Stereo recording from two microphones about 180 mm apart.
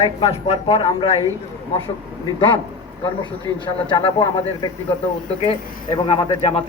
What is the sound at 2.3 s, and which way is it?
Speech, 30° left (ahead or behind).